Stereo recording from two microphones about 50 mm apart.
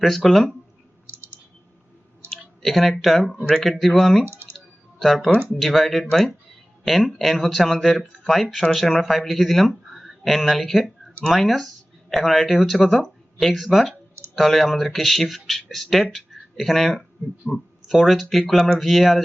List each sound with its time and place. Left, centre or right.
0.0 s speech: centre
1.0 s chirp: right
2.3 s speech: centre
4.3 s clicking: right
4.5 s music: centre
5.5 s speech: centre